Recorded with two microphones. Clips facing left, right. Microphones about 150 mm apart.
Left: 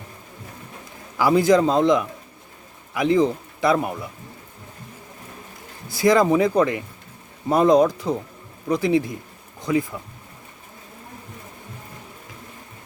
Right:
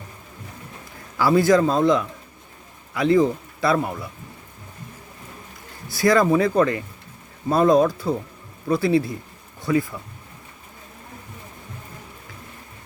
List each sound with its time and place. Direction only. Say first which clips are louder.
1.2 s speech: even; 20° left (ahead or behind)
5.9 s speech: left 1 dB; 20° left (ahead or behind)
9.6 s a sound: right 1 dB; 20° left (ahead or behind)